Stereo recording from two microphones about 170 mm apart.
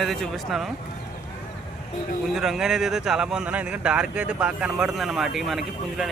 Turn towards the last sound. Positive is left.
turn(degrees=0)  # may be behind; listen again after turning